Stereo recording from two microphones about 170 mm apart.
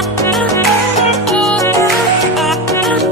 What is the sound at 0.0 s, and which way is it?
Music, centre (ahead or behind).